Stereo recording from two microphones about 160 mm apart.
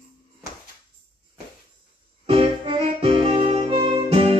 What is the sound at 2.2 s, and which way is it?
Music, 35° right (ahead or behind).